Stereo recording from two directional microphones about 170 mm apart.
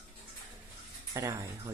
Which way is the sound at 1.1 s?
20° right (ahead or behind).